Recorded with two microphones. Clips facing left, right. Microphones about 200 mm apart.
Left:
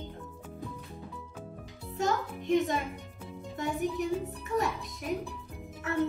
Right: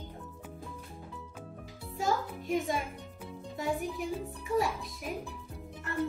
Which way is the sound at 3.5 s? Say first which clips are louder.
Left 2 dB; centre (ahead or behind).